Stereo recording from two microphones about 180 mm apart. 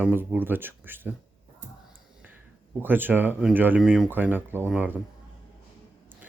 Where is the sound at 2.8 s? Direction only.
10° right (ahead or behind).